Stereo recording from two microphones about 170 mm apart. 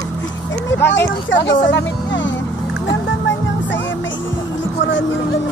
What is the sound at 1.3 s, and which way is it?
Speech, 90° left.